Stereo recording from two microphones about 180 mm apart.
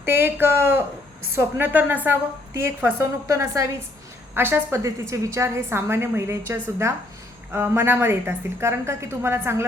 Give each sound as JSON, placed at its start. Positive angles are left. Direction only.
{"t": 0.0, "sound": "a woman's voice", "side_deg": -10}